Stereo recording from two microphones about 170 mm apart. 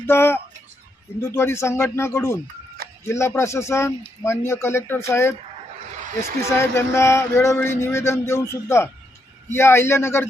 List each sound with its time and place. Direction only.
0.1 s speech: 15° left (ahead or behind)
6.4 s speech: 15° left (ahead or behind)